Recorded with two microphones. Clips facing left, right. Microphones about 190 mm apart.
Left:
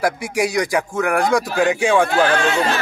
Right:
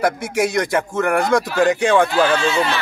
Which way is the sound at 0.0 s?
Centre (ahead or behind).